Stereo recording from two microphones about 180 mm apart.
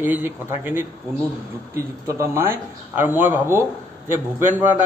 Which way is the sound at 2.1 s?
15° right (ahead or behind).